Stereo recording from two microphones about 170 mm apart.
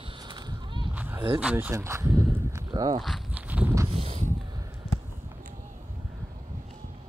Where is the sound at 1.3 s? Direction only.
10° right (ahead or behind); by 3.0 s 25° right (ahead or behind).